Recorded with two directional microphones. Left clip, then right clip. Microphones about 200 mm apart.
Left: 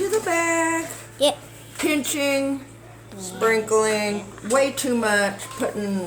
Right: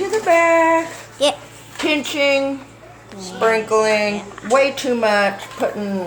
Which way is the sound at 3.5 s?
40° left (ahead or behind).